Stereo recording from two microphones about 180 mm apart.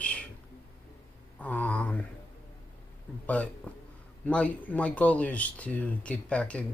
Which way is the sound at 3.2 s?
5° left (ahead or behind).